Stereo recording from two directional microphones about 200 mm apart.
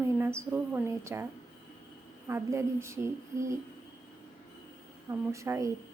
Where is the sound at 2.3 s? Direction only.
15° right (ahead or behind).